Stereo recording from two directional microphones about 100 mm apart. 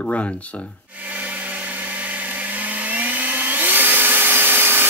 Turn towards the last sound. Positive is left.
turn(degrees=-20)  # may be behind; listen again after turning